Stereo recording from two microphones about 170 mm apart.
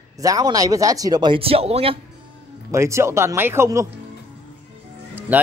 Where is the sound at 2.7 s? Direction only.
15° right (ahead or behind).